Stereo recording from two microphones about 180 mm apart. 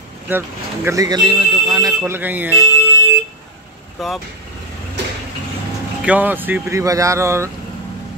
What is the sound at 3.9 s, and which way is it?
Speech, centre (ahead or behind).